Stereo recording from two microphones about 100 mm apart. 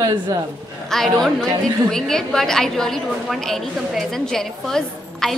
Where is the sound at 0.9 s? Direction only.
5° left (ahead or behind).